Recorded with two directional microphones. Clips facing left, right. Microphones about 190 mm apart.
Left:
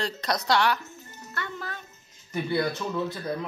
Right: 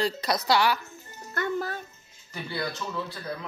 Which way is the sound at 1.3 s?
45° right (ahead or behind).